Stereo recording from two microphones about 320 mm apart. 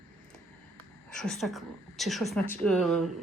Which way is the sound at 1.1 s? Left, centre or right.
Centre.